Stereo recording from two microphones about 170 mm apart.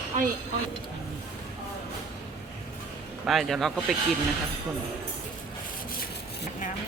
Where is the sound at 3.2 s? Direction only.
Centre (ahead or behind).